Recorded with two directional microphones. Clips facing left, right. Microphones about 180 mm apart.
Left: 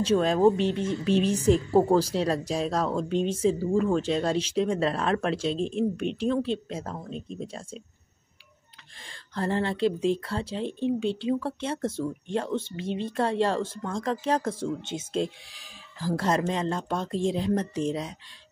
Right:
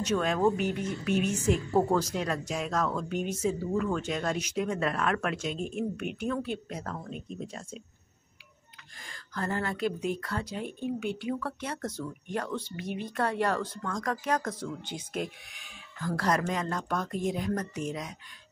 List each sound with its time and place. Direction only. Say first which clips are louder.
0.0 s speech: left 5 dB; 30° left (ahead or behind)
9.0 s speech: left 5 dB; 30° left (ahead or behind)